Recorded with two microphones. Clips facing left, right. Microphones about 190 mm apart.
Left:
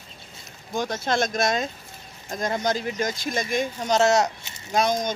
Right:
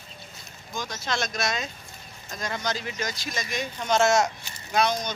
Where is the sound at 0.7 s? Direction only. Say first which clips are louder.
Left 6 dB; 55° left (ahead or behind).